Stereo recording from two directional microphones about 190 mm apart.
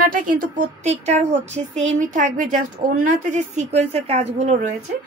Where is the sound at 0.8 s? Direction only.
35° right (ahead or behind).